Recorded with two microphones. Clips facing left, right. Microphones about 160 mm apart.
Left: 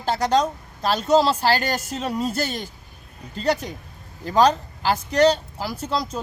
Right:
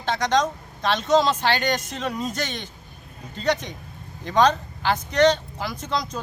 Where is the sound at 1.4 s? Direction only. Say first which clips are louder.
Left 1 dB; 35° left (ahead or behind).